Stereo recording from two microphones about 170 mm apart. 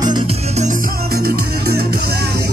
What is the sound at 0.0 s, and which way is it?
Music, 30° right (ahead or behind).